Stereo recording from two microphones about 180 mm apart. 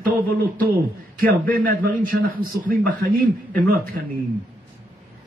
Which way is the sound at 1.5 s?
50° right (ahead or behind).